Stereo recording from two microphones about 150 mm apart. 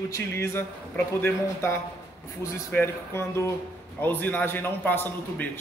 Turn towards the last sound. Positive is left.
turn(degrees=15)  # may be behind; listen again after turning